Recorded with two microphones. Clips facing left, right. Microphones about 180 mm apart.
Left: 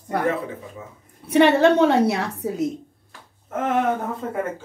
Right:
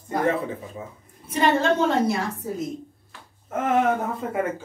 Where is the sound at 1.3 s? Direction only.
70° left (ahead or behind).